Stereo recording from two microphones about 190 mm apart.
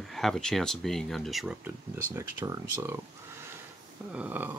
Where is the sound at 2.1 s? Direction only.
15° right (ahead or behind).